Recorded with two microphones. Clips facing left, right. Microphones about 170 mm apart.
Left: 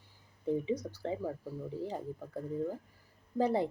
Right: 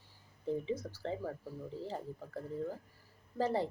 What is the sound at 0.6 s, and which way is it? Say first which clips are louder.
Speech: left 3 dB; 15° left (ahead or behind).